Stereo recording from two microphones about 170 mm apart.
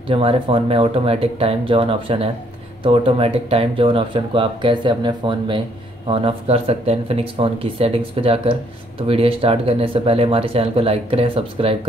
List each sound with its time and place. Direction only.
0.1 s speech: 35° right (ahead or behind)